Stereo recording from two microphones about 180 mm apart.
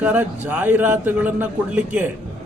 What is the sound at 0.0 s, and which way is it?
A man's voice, 10° right (ahead or behind).